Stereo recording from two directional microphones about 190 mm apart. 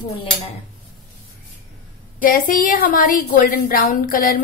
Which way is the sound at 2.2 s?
45° left (ahead or behind).